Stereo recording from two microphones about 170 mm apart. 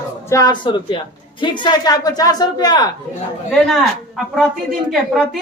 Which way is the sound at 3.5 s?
Centre (ahead or behind).